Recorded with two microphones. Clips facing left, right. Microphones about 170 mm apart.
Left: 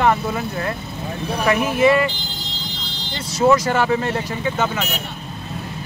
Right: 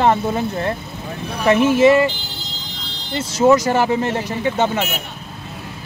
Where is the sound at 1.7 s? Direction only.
25° right (ahead or behind).